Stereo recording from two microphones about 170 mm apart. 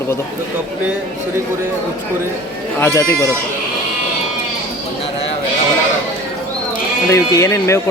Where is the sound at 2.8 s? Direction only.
15° left (ahead or behind).